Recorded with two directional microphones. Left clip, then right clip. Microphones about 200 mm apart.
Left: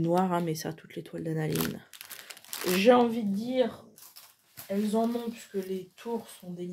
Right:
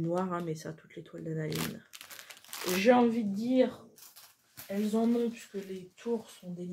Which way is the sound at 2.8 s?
25° left (ahead or behind).